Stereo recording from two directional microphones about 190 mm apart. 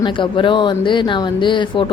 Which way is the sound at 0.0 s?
25° left (ahead or behind).